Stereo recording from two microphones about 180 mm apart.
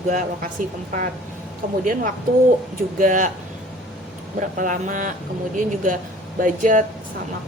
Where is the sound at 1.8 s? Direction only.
45° right (ahead or behind).